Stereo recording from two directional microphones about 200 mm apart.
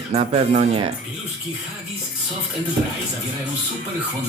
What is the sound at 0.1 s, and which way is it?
Speech, 30° right (ahead or behind).